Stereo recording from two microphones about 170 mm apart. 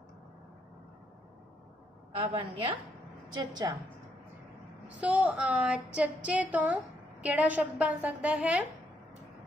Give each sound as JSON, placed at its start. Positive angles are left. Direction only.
{"t": 2.1, "sound": "a woman's voice", "side_deg": -30}
{"t": 4.8, "sound": "a woman's voice", "side_deg": -10}